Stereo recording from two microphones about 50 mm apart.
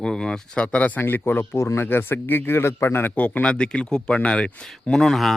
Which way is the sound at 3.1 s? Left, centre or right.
Left.